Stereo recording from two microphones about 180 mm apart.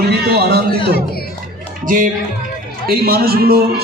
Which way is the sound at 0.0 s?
60° right (ahead or behind).